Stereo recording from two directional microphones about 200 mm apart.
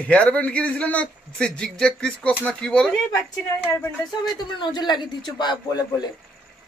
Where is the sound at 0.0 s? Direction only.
5° left (ahead or behind).